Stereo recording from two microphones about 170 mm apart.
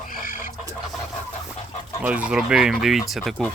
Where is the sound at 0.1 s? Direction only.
55° left (ahead or behind).